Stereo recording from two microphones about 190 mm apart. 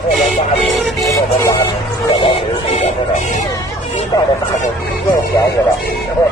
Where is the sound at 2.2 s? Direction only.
35° left (ahead or behind).